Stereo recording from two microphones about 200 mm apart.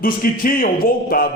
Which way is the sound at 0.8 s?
50° left (ahead or behind).